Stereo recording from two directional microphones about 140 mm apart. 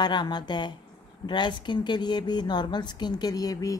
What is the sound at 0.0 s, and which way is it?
Speech, 30° left (ahead or behind).